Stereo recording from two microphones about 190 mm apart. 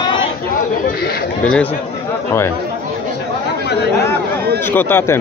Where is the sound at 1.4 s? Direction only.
5° left (ahead or behind).